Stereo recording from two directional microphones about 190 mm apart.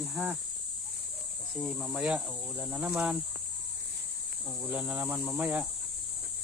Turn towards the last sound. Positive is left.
turn(degrees=-10)  # may be behind; listen again after turning